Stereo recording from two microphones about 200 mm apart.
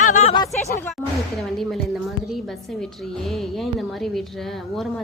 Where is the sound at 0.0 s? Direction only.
35° left (ahead or behind).